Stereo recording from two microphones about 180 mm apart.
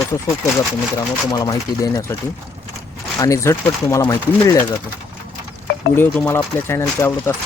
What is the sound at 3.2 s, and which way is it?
Speech, 15° left (ahead or behind).